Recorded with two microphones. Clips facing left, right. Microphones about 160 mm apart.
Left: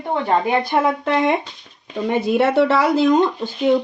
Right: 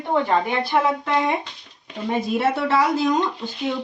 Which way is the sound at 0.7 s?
65° left (ahead or behind).